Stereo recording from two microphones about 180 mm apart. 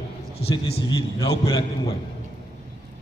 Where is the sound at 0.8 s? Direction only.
25° left (ahead or behind).